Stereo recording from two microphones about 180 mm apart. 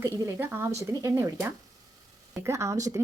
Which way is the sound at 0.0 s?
10° right (ahead or behind).